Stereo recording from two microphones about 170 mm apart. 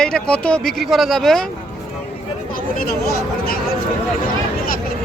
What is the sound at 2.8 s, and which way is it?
Speech, 60° left (ahead or behind).